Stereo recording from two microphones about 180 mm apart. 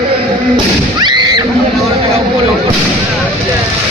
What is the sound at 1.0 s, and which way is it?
Neigh, 25° right (ahead or behind).